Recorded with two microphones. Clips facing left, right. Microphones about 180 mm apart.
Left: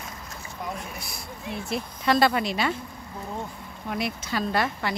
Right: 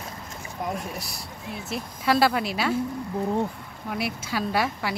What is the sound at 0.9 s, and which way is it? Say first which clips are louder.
Speech: right 3 dB; 35° right (ahead or behind).